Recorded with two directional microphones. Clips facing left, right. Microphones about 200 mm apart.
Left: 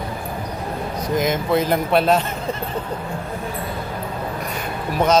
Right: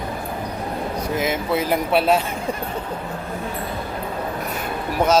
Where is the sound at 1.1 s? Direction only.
5° right (ahead or behind).